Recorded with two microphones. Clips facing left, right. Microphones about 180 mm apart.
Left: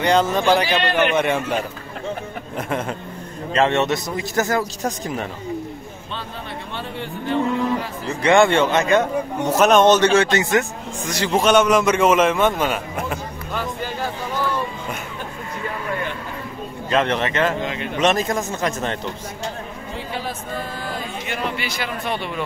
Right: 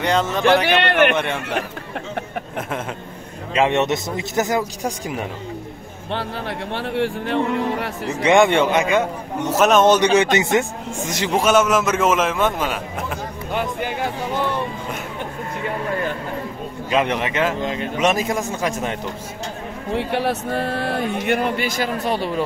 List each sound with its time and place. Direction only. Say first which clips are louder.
0.0 s a man's voice: left 2 dB; centre (ahead or behind)
0.7 s speech: right 3 dB; 65° right (ahead or behind)
1.1 s a man's voice: left 3 dB; 5° left (ahead or behind)
3.5 s a man's voice: even; 15° right (ahead or behind)
6.7 s speech: right 9 dB; 75° right (ahead or behind)
8.2 s a man's voice: even; 15° right (ahead or behind); by 9.9 s centre (ahead or behind)
9.9 s speech: even; 20° right (ahead or behind)
11.3 s a man's voice: left 1 dB; 5° right (ahead or behind)
13.5 s a sound: right 3 dB; 20° right (ahead or behind)
16.9 s a man's voice: even; 10° right (ahead or behind)
20.0 s speech: right 8 dB; 70° right (ahead or behind); by 22.4 s 35° right (ahead or behind)